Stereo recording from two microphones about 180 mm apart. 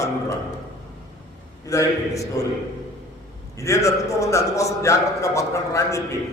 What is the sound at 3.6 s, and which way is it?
A man's voice, 15° left (ahead or behind).